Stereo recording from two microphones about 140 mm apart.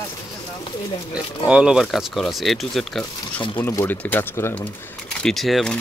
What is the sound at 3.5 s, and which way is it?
Speech, 15° left (ahead or behind).